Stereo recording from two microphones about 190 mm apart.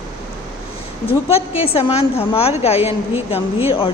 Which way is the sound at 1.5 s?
30° left (ahead or behind).